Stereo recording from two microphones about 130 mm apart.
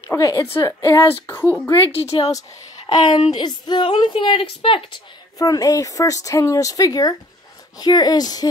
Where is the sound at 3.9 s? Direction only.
40° left (ahead or behind).